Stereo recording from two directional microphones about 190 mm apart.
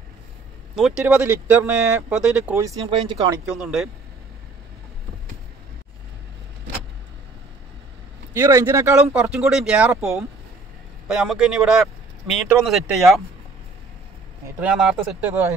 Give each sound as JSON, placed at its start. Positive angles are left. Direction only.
{"t": 0.7, "sound": "speech", "side_deg": -5}
{"t": 2.9, "sound": "speech", "side_deg": -25}
{"t": 3.4, "sound": "speech", "side_deg": 0}
{"t": 8.3, "sound": "speech", "side_deg": -15}
{"t": 11.1, "sound": "speech", "side_deg": -5}
{"t": 14.6, "sound": "speech", "side_deg": -5}